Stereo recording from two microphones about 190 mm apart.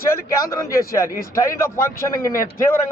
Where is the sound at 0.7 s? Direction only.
50° left (ahead or behind).